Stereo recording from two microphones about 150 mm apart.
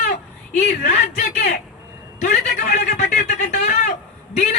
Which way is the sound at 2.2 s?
55° left (ahead or behind).